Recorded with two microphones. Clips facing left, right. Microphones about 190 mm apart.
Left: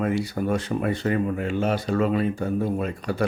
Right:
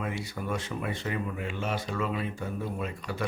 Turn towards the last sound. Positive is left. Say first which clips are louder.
# left 8 dB
turn(degrees=40)  # may be behind; listen again after turning